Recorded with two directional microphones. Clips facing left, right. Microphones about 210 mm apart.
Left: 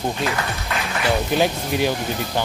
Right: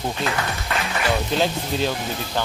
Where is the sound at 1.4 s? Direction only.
15° left (ahead or behind).